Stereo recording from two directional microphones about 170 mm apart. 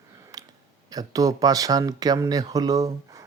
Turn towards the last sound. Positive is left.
turn(degrees=-20)  # may be behind; listen again after turning